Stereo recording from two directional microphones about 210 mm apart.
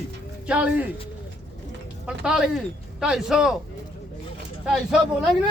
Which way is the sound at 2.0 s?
5° right (ahead or behind).